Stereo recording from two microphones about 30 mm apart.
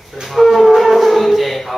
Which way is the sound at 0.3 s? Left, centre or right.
Centre.